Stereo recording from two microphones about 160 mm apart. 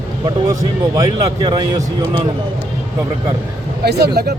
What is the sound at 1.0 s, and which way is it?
Speech, 25° right (ahead or behind).